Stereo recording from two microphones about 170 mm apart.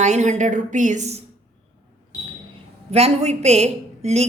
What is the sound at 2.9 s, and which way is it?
A woman's voice, 40° right (ahead or behind).